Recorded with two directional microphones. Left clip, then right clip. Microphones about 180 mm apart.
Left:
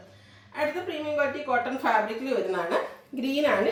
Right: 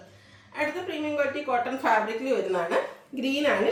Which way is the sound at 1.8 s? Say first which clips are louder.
Right 1 dB; 15° right (ahead or behind).